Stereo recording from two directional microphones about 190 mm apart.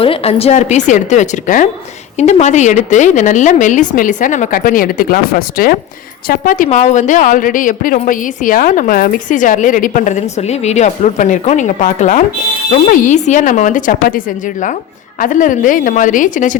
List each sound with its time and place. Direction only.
0.0 s a woman's voice: 30° left (ahead or behind)